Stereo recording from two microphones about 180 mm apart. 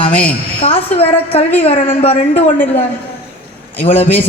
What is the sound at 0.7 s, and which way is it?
Speech, 10° left (ahead or behind).